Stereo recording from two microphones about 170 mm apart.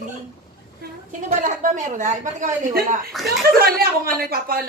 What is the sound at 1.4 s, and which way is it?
A woman's voice, 45° right (ahead or behind).